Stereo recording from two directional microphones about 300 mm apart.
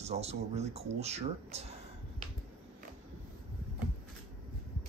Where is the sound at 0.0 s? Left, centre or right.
Right.